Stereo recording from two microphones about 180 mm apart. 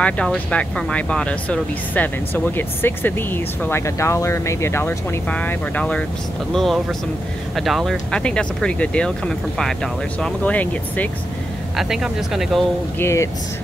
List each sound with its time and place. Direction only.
0.0 s speech: 5° left (ahead or behind)
11.7 s speech: centre (ahead or behind)
13.0 s speech: 15° left (ahead or behind)